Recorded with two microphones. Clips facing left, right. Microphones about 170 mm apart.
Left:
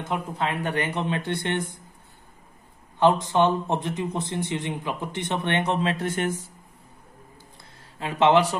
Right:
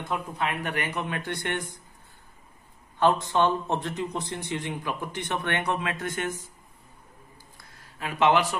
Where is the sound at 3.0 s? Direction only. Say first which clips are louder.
Left 3 dB; 20° left (ahead or behind).